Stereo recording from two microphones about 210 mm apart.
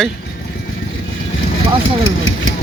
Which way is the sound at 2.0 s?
70° left (ahead or behind).